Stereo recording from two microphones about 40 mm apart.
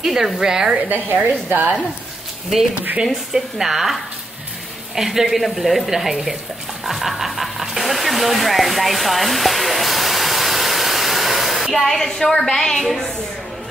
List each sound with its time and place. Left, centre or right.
0.0 s speech: centre
0.8 s a woman's voice: right
2.7 s a woman's voice: right
3.1 s speech: centre